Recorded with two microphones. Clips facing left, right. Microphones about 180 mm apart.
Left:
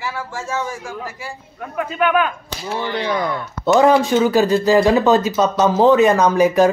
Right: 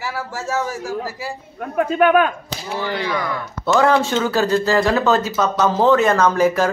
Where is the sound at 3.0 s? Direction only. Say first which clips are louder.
Left 2 dB; 20° left (ahead or behind).